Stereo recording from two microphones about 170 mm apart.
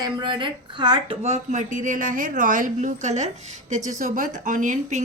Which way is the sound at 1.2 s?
45° right (ahead or behind).